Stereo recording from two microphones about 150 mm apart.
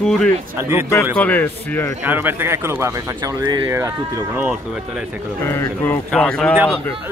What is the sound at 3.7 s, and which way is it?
Speech, 15° right (ahead or behind).